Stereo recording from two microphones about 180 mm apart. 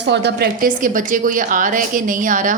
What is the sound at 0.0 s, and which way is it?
A woman's voice, 70° right (ahead or behind).